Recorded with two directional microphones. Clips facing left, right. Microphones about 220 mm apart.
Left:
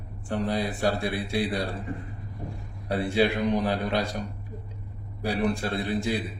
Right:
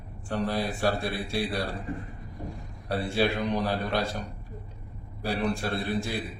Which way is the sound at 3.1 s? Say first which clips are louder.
Left 3 dB; 15° left (ahead or behind).